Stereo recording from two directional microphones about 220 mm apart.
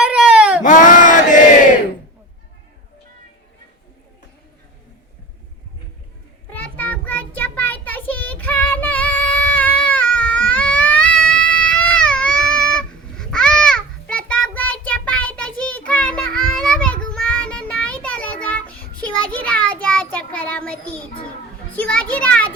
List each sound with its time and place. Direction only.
0.0 s baby cry: 5° right (ahead or behind)
0.6 s battle cry: 35° left (ahead or behind)
6.5 s child singing: 10° left (ahead or behind)
21.8 s a sound: 5° left (ahead or behind)